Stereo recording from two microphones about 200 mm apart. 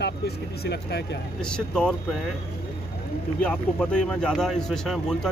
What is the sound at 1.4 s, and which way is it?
Speech, 5° left (ahead or behind).